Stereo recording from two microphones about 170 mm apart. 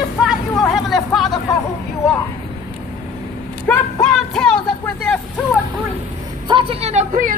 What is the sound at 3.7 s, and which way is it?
Vehicle, 5° left (ahead or behind).